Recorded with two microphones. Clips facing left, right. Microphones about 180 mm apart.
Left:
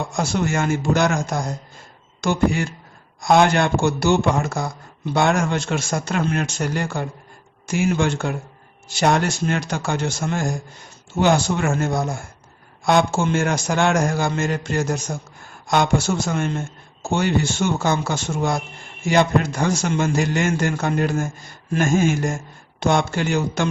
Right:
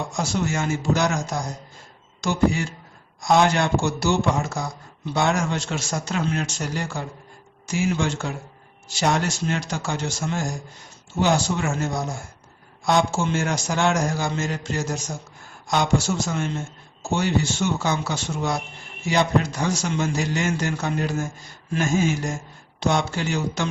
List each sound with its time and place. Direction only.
0.1 s a man's voice: 55° left (ahead or behind)